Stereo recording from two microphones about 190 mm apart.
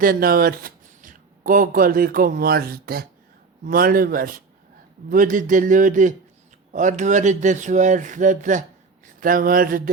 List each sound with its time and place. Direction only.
0.0 s a man's voice: 50° right (ahead or behind)